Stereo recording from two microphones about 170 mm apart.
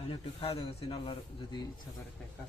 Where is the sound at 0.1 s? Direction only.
35° left (ahead or behind).